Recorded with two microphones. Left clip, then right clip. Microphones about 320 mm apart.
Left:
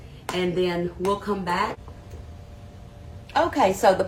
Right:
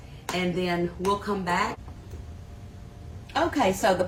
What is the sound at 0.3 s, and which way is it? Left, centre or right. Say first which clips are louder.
Speech: left 3 dB; centre.